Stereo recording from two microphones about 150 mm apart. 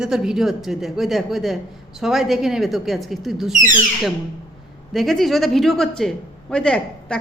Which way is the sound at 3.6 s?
65° right (ahead or behind).